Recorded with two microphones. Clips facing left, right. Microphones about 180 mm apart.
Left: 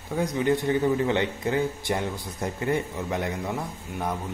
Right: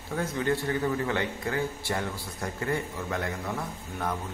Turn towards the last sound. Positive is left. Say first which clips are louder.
# left 2 dB
turn(degrees=15)  # may be behind; listen again after turning